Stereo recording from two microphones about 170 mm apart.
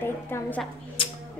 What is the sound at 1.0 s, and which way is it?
Music, 30° left (ahead or behind).